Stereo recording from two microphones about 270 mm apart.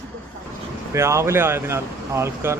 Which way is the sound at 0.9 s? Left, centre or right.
Centre.